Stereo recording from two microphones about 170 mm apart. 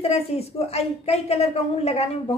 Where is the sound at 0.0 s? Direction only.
35° left (ahead or behind).